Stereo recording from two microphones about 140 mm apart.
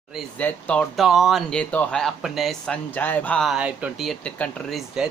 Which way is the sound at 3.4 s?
10° right (ahead or behind).